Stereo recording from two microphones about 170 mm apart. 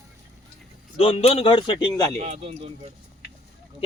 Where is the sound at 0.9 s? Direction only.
35° left (ahead or behind).